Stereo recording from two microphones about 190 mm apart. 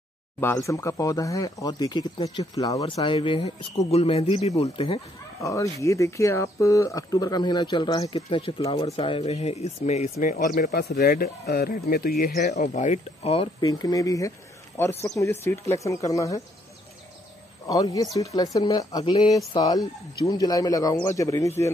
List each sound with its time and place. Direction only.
0.4 s speech: 15° left (ahead or behind); by 5.0 s 30° left (ahead or behind)
5.4 s speech: 15° left (ahead or behind); by 10.3 s 35° left (ahead or behind)
10.5 s speech: 55° left (ahead or behind)
12.4 s speech: 40° left (ahead or behind); by 16.3 s 15° left (ahead or behind)
17.6 s speech: 20° left (ahead or behind)